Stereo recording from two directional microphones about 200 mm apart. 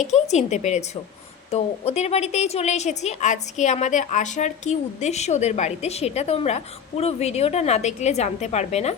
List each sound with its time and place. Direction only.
0.0 s a woman's voice: 35° left (ahead or behind)